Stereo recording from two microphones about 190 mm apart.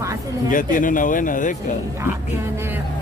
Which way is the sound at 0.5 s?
45° left (ahead or behind).